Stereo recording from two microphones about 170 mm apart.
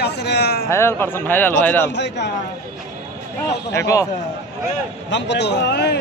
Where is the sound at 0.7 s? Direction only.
15° left (ahead or behind).